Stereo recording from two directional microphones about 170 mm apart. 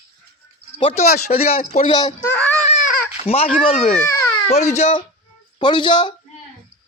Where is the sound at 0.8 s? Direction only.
30° left (ahead or behind).